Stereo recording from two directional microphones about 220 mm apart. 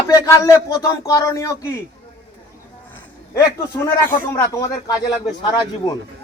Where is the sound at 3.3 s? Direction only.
10° left (ahead or behind).